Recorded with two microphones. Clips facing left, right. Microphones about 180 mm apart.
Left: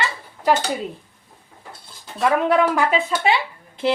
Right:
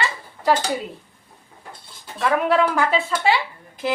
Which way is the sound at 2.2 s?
20° left (ahead or behind).